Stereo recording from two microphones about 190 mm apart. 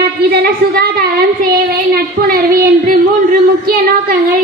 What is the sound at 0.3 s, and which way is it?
Speech, 55° right (ahead or behind).